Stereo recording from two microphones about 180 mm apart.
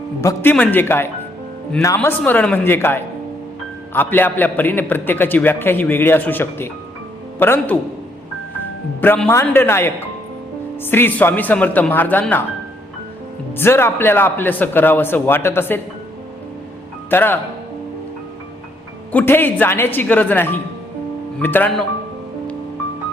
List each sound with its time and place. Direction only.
0.2 s a man's voice: 15° left (ahead or behind)
9.0 s a man's voice: 10° left (ahead or behind)
13.6 s a man's voice: 15° left (ahead or behind)
17.1 s a man's voice: 10° left (ahead or behind)
19.1 s a man's voice: 10° left (ahead or behind)